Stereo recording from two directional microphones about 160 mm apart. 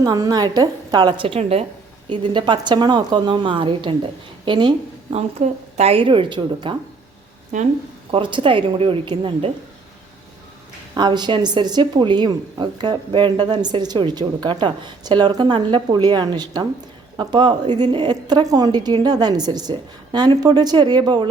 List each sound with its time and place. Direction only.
0.0 s speech: 25° right (ahead or behind)
1.2 s a woman's voice: 35° right (ahead or behind)
2.0 s speech: 30° right (ahead or behind)
5.1 s a woman's voice: 40° right (ahead or behind)
7.5 s a woman's voice: 50° right (ahead or behind)
8.1 s a woman's voice: 30° right (ahead or behind)
10.9 s speech: 25° right (ahead or behind)